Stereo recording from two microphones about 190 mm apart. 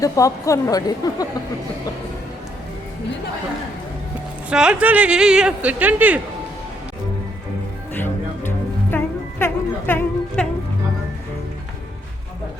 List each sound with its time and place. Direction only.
0.0 s a woman's voice: 15° left (ahead or behind)
4.4 s speech: 5° right (ahead or behind)
7.9 s music: 10° left (ahead or behind)